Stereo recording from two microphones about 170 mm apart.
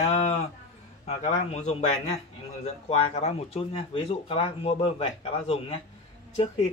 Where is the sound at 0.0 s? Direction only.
40° left (ahead or behind).